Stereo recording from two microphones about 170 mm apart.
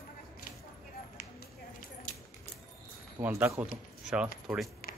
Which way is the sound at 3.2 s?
15° right (ahead or behind).